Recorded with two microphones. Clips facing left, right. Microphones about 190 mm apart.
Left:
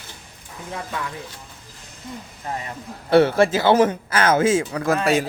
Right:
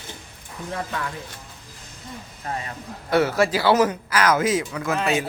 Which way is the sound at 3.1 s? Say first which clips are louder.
Left 4 dB; 30° left (ahead or behind).